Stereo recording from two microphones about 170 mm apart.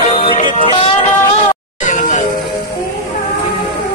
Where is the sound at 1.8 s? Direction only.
50° left (ahead or behind).